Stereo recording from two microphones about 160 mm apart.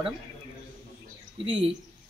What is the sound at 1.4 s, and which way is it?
Speech, 35° right (ahead or behind).